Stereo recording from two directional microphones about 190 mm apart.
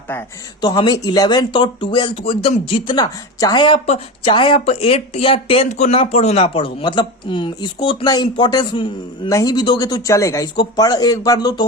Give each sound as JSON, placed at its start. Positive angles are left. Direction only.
{"t": 0.6, "sound": "speech", "side_deg": 20}